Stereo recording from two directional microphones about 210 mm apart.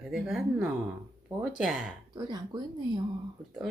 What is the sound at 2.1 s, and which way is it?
Speech, 20° right (ahead or behind).